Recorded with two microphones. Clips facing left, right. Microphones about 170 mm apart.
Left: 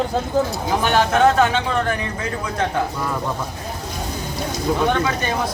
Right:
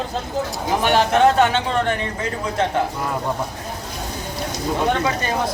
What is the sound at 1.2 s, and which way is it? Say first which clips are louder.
Speech: even; 30° right (ahead or behind).